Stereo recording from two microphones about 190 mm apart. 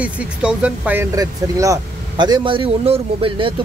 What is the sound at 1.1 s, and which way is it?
Speech, 15° right (ahead or behind).